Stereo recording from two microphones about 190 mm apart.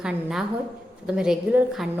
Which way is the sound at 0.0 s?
5° right (ahead or behind).